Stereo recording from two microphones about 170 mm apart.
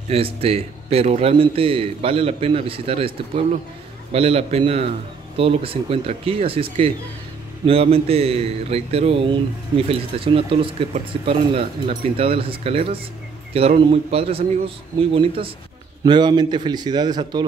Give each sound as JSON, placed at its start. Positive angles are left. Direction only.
{"t": 0.1, "sound": "a man's voice", "side_deg": -35}